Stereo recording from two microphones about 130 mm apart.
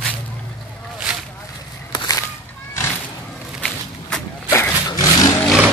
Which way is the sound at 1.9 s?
30° left (ahead or behind).